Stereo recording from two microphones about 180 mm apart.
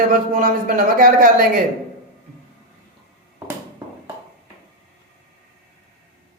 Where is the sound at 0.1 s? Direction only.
50° right (ahead or behind).